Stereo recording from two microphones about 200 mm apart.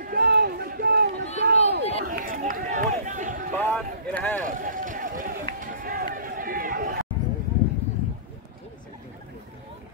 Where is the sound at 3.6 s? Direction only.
10° left (ahead or behind).